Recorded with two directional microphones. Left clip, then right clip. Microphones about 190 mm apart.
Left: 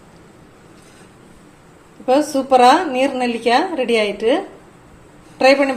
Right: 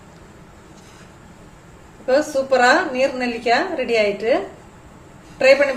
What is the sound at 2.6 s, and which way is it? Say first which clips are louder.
A woman's voice: left 3 dB; 35° left (ahead or behind).